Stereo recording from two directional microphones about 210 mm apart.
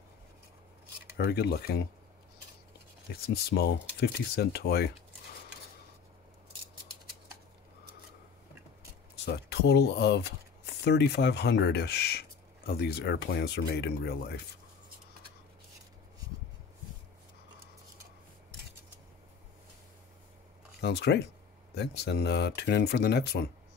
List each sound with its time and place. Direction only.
1.1 s speech: 50° left (ahead or behind)
3.1 s speech: 50° left (ahead or behind)
9.1 s speech: 50° left (ahead or behind)
20.8 s speech: 50° left (ahead or behind)